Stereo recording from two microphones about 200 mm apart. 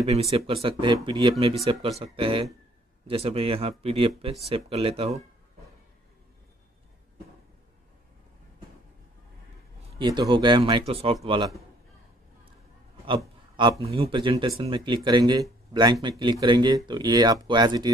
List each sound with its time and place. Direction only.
0.0 s speech: 30° right (ahead or behind)
9.8 s speech: 25° right (ahead or behind)
13.6 s speech: 25° right (ahead or behind)